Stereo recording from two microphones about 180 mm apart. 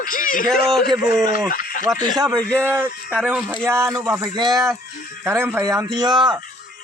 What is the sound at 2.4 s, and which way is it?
Speech, 5° left (ahead or behind).